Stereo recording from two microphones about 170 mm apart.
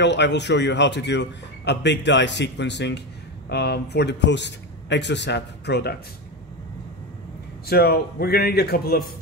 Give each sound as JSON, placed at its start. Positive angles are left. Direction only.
{"t": 0.0, "sound": "a man's voice", "side_deg": 90}
{"t": 3.4, "sound": "a man's voice", "side_deg": 75}
{"t": 7.6, "sound": "a man's voice", "side_deg": 65}